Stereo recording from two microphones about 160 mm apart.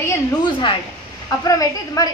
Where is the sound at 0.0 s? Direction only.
15° left (ahead or behind).